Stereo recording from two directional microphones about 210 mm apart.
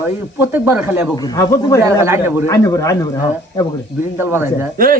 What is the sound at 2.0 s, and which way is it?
Speech, 10° right (ahead or behind).